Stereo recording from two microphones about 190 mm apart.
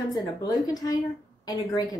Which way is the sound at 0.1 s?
20° left (ahead or behind).